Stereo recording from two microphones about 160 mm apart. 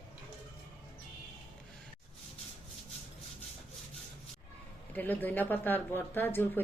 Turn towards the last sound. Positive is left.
turn(degrees=10)  # may be behind; listen again after turning